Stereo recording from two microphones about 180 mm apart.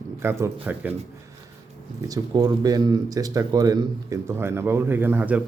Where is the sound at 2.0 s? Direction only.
20° right (ahead or behind).